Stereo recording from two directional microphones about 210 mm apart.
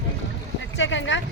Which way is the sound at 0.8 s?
60° left (ahead or behind).